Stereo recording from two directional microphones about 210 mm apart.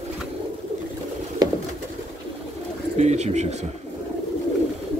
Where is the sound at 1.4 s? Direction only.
20° right (ahead or behind).